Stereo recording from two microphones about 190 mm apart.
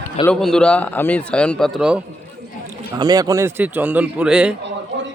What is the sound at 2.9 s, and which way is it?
Speech, 20° right (ahead or behind).